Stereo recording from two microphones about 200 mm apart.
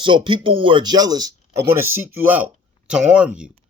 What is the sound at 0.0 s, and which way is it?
Speech, 25° right (ahead or behind).